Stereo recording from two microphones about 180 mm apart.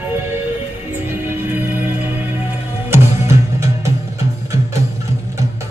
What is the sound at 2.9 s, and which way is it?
Music, 15° right (ahead or behind).